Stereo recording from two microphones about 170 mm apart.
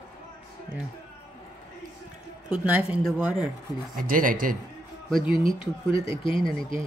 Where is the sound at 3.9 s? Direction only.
55° right (ahead or behind).